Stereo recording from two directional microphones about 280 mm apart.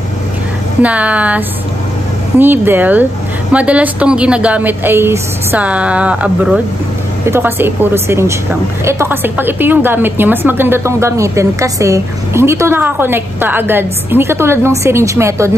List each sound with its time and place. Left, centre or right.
0.8 s a woman's voice: centre